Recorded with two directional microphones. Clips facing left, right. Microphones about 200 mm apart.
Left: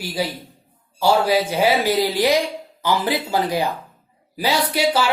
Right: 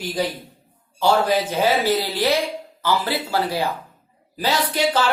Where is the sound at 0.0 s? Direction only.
10° left (ahead or behind).